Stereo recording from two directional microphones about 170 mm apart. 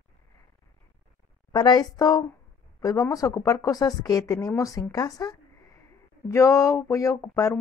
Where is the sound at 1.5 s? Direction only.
25° left (ahead or behind).